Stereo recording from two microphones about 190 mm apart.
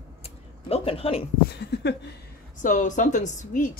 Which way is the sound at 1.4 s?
60° left (ahead or behind).